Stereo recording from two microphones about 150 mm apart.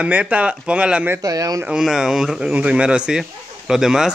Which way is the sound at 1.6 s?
5° right (ahead or behind).